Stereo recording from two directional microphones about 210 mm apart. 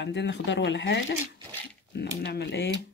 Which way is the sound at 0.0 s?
55° left (ahead or behind).